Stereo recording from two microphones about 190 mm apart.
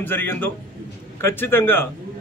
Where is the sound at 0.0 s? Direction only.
10° left (ahead or behind).